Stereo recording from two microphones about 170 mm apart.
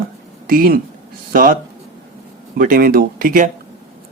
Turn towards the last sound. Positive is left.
turn(degrees=-55)  # may be behind; listen again after turning